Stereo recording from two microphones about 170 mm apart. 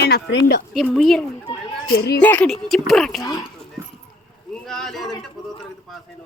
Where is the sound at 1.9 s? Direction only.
75° left (ahead or behind).